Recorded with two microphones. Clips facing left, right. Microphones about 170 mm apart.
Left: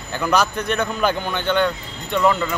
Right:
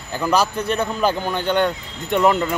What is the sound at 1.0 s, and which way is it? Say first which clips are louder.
Speech: right 2 dB; 35° right (ahead or behind).